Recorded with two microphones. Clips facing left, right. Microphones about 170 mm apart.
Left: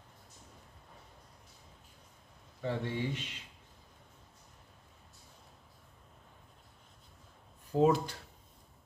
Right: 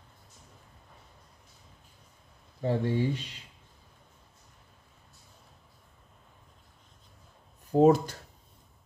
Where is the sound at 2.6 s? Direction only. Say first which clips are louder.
Right 7 dB; 40° right (ahead or behind).